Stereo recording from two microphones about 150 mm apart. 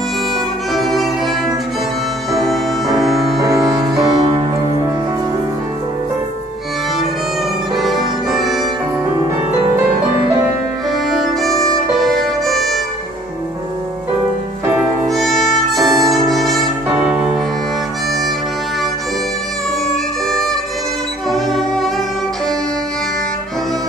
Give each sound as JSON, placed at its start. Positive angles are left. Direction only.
{"t": 0.7, "sound": "music", "side_deg": 0}
{"t": 2.3, "sound": "music", "side_deg": 0}
{"t": 3.4, "sound": "music", "side_deg": -25}
{"t": 7.7, "sound": "music", "side_deg": 0}
{"t": 11.1, "sound": "music", "side_deg": 0}
{"t": 15.0, "sound": "music", "side_deg": 0}
{"t": 21.3, "sound": "music", "side_deg": 0}